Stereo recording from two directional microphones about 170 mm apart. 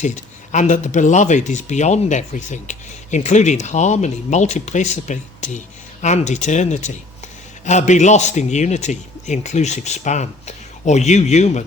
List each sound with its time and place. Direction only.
0.0 s speech: 45° left (ahead or behind)